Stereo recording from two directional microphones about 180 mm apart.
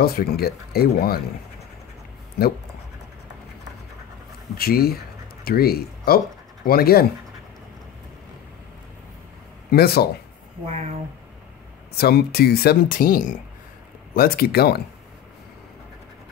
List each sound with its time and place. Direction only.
0.0 s speech: 55° left (ahead or behind)
2.4 s speech: 60° left (ahead or behind)
4.6 s speech: 55° left (ahead or behind)
9.7 s speech: 60° left (ahead or behind)
11.9 s speech: 60° left (ahead or behind)